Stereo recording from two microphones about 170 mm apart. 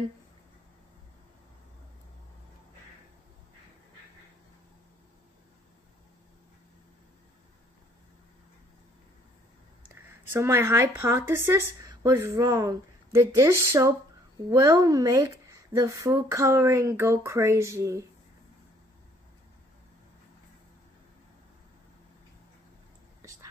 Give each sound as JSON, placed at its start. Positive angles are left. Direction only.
{"t": 10.3, "sound": "speech", "side_deg": -15}